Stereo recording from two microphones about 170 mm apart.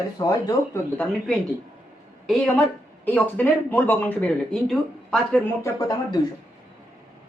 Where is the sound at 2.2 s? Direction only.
Centre (ahead or behind).